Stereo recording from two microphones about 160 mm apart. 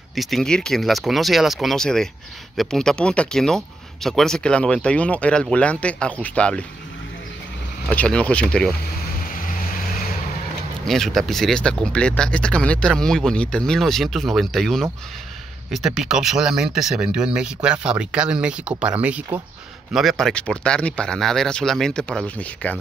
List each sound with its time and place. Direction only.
0.1 s speech: centre (ahead or behind)
7.9 s speech: 10° left (ahead or behind)
9.3 s vehicle: 55° left (ahead or behind)
10.9 s speech: centre (ahead or behind)